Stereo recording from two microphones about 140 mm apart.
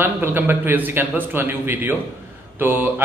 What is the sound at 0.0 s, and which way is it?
A man's voice, 15° right (ahead or behind).